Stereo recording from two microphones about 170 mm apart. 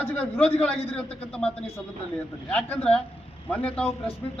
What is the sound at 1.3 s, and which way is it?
A man's voice, 5° left (ahead or behind).